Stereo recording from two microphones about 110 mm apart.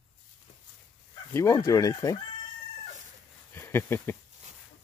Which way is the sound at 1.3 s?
25° left (ahead or behind).